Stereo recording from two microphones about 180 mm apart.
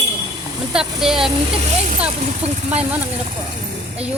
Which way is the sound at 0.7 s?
Centre (ahead or behind).